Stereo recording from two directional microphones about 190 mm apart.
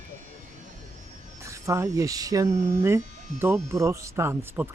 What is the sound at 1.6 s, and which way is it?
Speech, 15° right (ahead or behind).